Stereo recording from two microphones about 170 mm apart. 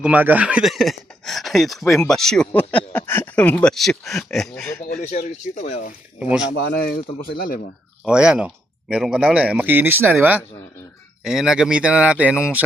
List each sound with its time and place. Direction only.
0.0 s speech: 10° right (ahead or behind)
5.5 s speech: 45° left (ahead or behind)
6.1 s speech: 5° right (ahead or behind)
6.4 s speech: 90° left; by 7.6 s 60° left (ahead or behind)
8.0 s speech: 5° right (ahead or behind)